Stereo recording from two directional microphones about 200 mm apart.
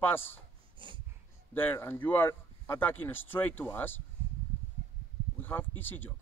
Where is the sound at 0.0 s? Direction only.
10° left (ahead or behind).